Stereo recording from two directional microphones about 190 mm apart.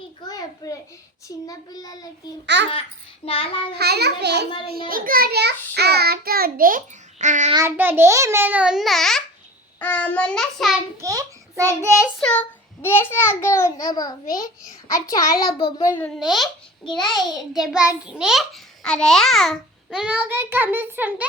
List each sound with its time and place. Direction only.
0.3 s a sound: 20° left (ahead or behind)
1.5 s a child's voice: 20° left (ahead or behind)
2.5 s a child's voice: 65° right (ahead or behind)
3.2 s a child's voice: 30° left (ahead or behind)
3.8 s a child's voice: 60° right (ahead or behind)
4.7 s child singing: 50° right (ahead or behind)
7.5 s a child's voice: 10° right (ahead or behind)
11.0 s a child's voice: 20° right (ahead or behind)
12.2 s a child's voice: 5° left (ahead or behind); by 16.0 s 20° left (ahead or behind)
16.0 s a child's voice: 5° left (ahead or behind)
17.0 s a child's voice: 25° left (ahead or behind)
17.2 s a child's voice: centre (ahead or behind)